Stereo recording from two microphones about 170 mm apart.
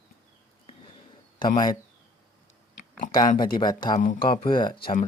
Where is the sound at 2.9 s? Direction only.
55° left (ahead or behind).